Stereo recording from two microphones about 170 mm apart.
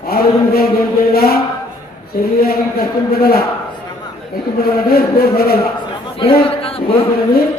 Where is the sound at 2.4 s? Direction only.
65° left (ahead or behind).